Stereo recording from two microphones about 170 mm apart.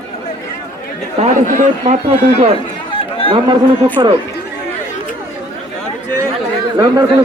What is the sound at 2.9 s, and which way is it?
Run, 30° left (ahead or behind).